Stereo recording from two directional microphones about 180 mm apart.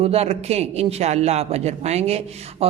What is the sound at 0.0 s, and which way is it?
A man's voice, 35° right (ahead or behind).